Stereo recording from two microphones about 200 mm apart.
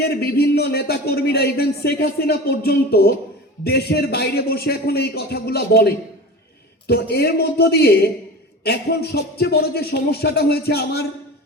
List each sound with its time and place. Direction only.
0.0 s a man's voice: 50° left (ahead or behind)